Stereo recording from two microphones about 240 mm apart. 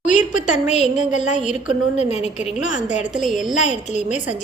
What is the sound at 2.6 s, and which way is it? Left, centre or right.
A woman's voice, left.